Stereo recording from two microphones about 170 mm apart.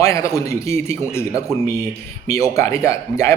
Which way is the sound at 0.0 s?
20° left (ahead or behind).